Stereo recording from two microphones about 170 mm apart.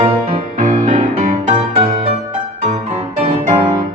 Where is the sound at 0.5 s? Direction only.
35° right (ahead or behind).